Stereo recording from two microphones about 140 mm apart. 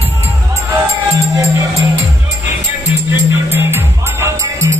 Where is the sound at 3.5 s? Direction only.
15° right (ahead or behind).